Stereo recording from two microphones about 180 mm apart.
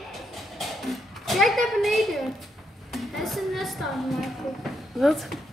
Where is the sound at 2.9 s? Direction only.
Centre (ahead or behind).